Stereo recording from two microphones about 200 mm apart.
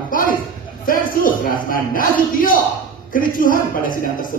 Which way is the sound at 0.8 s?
45° left (ahead or behind).